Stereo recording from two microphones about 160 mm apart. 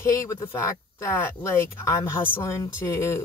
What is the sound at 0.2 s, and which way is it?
Speech, 20° left (ahead or behind).